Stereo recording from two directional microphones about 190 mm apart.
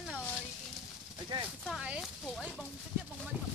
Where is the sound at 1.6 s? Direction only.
5° right (ahead or behind).